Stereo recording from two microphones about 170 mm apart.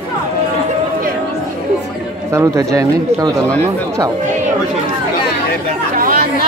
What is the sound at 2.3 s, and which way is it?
Speech, 20° right (ahead or behind).